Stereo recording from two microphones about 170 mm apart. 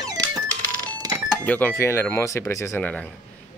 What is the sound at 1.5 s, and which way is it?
Speech, 10° left (ahead or behind).